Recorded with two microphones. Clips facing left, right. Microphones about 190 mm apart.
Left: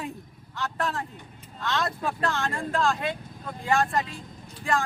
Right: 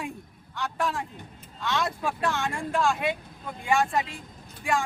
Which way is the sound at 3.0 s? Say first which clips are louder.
Right 2 dB; 15° right (ahead or behind).